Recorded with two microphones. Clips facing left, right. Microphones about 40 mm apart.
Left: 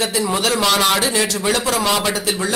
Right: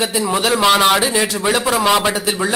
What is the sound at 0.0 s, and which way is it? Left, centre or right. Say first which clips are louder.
A man's voice: right 2 dB; centre.